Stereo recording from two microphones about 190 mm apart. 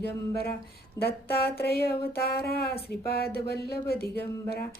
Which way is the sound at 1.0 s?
15° left (ahead or behind).